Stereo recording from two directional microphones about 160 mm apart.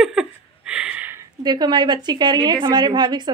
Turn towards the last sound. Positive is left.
turn(degrees=-25)  # may be behind; listen again after turning